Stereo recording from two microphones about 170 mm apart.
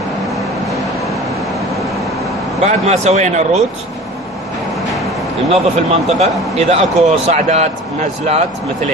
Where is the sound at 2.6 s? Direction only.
40° right (ahead or behind).